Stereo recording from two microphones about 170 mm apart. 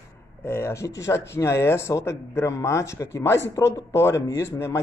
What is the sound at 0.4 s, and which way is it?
Speech, 15° left (ahead or behind).